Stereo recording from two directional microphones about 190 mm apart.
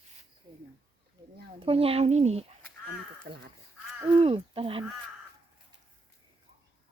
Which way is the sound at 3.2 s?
55° right (ahead or behind).